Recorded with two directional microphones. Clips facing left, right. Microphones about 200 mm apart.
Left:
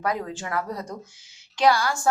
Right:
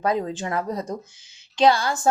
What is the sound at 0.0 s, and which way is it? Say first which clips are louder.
A woman's voice: right 4 dB; 25° right (ahead or behind).